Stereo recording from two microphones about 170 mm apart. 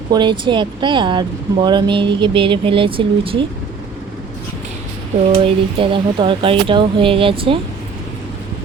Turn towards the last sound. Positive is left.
turn(degrees=-30)  # may be behind; listen again after turning